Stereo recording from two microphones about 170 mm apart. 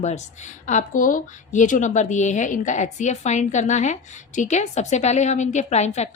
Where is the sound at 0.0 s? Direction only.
45° left (ahead or behind).